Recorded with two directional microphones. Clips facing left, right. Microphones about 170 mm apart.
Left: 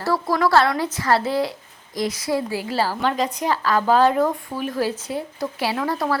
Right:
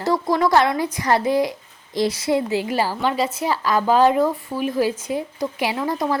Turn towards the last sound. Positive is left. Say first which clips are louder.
# right 1 dB
turn(degrees=-15)  # may be behind; listen again after turning